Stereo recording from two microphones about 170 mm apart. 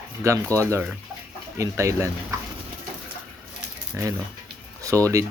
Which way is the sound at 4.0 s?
15° right (ahead or behind).